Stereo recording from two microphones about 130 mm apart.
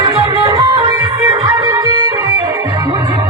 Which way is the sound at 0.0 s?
30° right (ahead or behind).